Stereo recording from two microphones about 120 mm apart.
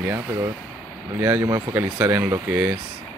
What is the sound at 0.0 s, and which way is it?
Speech, 20° right (ahead or behind).